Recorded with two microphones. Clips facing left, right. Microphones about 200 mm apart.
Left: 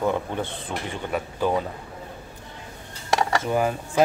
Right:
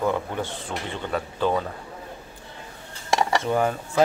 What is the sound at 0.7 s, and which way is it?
Speech, 15° left (ahead or behind).